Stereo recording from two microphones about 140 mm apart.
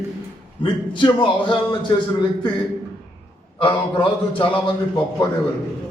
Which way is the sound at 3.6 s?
35° left (ahead or behind).